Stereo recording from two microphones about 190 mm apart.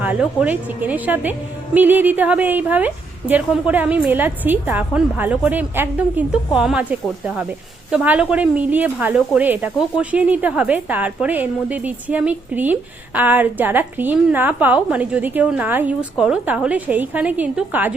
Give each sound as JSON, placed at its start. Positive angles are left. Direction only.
{"t": 0.0, "sound": "a woman's voice", "side_deg": -5}